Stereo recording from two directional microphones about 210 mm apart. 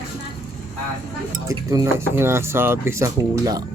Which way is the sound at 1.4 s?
15° right (ahead or behind).